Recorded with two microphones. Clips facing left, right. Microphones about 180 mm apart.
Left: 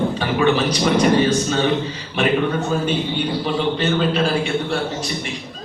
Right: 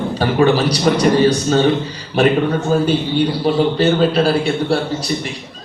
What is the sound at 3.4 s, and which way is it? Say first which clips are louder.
A man's voice: right 7 dB; 40° right (ahead or behind).